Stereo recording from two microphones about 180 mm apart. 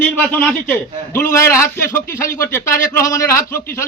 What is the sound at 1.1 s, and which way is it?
A man's voice, 15° left (ahead or behind).